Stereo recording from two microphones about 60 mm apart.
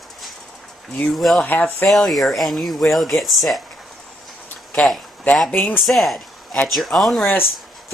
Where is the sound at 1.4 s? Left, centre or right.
Left.